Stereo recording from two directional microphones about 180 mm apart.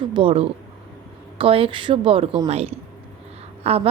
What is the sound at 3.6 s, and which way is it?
Speech, 35° right (ahead or behind).